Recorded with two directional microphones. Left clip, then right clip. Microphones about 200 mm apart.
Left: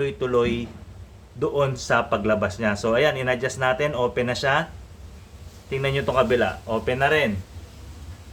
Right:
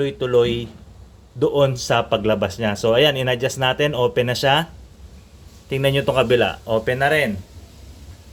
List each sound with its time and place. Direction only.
0.0 s speech: 20° right (ahead or behind)
5.6 s speech: 35° right (ahead or behind)